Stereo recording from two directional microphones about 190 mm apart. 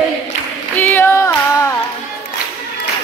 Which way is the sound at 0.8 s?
10° left (ahead or behind).